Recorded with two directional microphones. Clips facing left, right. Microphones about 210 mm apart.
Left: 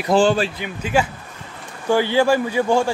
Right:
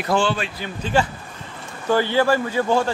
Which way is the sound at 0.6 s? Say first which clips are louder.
Left 1 dB; 10° left (ahead or behind).